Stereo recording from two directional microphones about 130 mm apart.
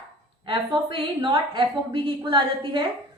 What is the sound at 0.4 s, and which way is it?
A woman's voice, 40° right (ahead or behind).